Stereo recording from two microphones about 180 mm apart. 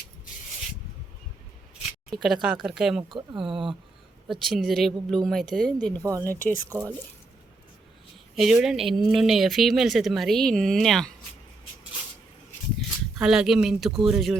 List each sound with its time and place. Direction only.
2.0 s speech: centre (ahead or behind)
3.1 s speech: 25° right (ahead or behind)
3.4 s speech: centre (ahead or behind)
6.0 s speech: 20° right (ahead or behind)
6.4 s speech: 50° left (ahead or behind)
6.7 s speech: 15° right (ahead or behind)
8.4 s speech: centre (ahead or behind)
13.1 s speech: 5° right (ahead or behind)